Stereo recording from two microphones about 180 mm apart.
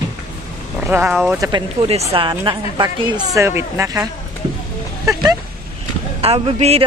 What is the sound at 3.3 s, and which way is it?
Speech, 15° right (ahead or behind).